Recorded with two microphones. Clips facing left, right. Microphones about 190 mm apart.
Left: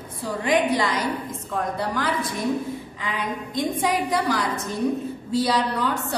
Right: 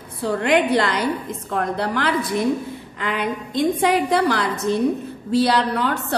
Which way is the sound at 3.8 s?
70° right (ahead or behind).